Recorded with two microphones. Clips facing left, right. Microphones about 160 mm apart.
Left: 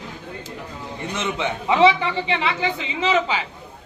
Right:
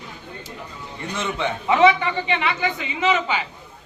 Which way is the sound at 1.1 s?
20° left (ahead or behind).